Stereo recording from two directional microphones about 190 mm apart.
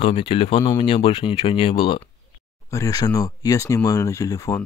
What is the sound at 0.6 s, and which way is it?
Speech, 15° left (ahead or behind).